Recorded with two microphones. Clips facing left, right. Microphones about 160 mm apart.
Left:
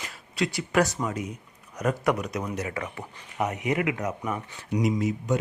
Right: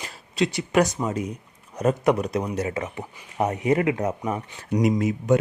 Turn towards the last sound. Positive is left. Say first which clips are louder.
# right 5 dB
turn(degrees=-55)  # may be behind; listen again after turning